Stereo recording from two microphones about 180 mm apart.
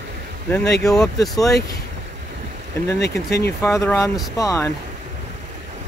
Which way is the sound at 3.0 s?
65° left (ahead or behind).